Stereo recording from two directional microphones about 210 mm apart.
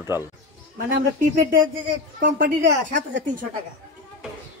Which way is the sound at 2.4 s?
40° right (ahead or behind).